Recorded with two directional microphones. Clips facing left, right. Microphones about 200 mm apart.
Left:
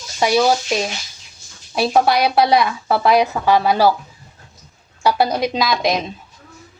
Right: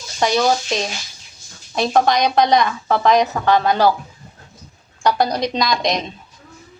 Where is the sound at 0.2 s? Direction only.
10° left (ahead or behind).